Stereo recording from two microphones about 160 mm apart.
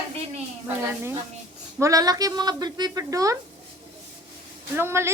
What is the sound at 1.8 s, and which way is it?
A woman's voice, 20° right (ahead or behind).